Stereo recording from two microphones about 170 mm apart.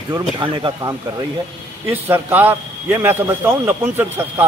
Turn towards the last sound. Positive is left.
turn(degrees=-10)  # may be behind; listen again after turning